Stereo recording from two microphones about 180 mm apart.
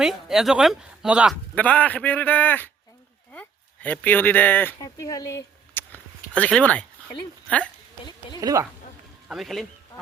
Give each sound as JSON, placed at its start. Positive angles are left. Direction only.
{"t": 0.0, "sound": "speech", "side_deg": 0}
{"t": 1.5, "sound": "a man's voice", "side_deg": 5}
{"t": 3.8, "sound": "a woman's voice", "side_deg": 10}
{"t": 8.4, "sound": "a woman's voice", "side_deg": -20}
{"t": 9.3, "sound": "speech", "side_deg": 0}